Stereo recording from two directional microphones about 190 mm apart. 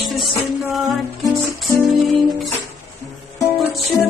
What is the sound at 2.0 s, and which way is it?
Music, centre (ahead or behind).